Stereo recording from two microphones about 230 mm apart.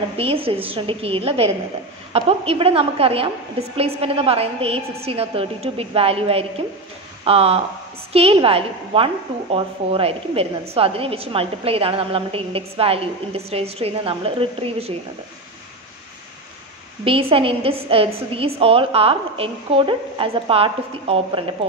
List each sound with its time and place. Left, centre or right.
0.2 s a woman's voice: right
17.0 s a woman's voice: right